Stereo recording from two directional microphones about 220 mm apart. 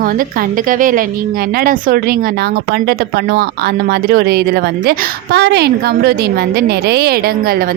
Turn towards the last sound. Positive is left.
turn(degrees=-45)  # may be behind; listen again after turning